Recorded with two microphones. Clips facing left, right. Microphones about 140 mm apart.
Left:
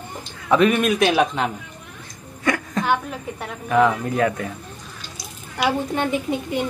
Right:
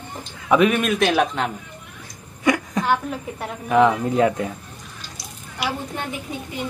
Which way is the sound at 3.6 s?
20° right (ahead or behind).